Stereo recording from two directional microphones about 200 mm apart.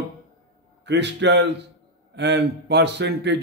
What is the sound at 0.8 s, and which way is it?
Speech, 60° right (ahead or behind).